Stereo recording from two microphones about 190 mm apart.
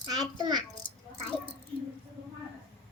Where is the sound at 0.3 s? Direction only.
20° right (ahead or behind).